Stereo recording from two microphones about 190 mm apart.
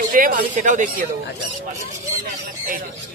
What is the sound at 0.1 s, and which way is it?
Speech, 45° right (ahead or behind).